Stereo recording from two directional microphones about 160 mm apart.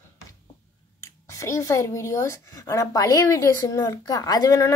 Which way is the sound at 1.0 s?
20° left (ahead or behind).